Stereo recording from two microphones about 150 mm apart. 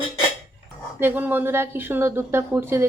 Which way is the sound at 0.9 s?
15° right (ahead or behind).